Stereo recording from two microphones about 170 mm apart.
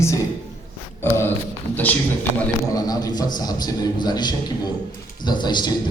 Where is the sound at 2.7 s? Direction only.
20° left (ahead or behind).